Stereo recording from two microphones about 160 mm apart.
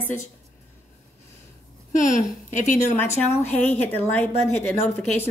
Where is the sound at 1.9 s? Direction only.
50° left (ahead or behind).